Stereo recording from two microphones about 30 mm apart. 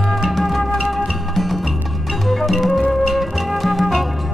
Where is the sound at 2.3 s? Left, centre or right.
Centre.